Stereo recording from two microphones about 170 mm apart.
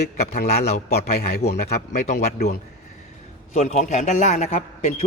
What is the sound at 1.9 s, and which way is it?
Speech, 45° left (ahead or behind).